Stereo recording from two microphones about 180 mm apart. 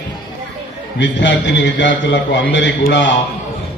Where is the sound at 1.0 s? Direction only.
90° left.